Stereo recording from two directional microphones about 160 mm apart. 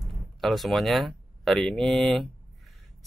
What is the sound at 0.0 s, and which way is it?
Speech, centre (ahead or behind).